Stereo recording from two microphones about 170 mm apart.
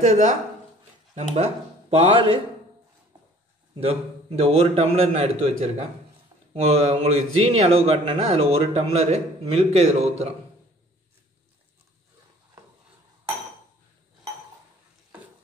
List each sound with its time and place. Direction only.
0.0 s a man's voice: 45° right (ahead or behind)
3.7 s a man's voice: 35° right (ahead or behind)